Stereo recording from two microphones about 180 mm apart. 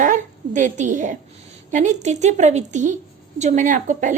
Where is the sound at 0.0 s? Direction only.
45° right (ahead or behind).